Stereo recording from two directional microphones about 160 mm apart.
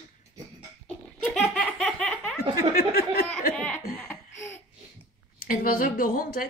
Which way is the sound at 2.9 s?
70° left (ahead or behind).